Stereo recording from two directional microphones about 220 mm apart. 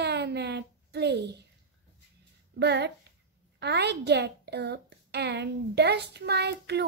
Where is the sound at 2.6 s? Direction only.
50° right (ahead or behind).